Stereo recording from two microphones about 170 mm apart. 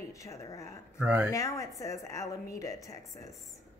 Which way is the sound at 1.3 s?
20° left (ahead or behind).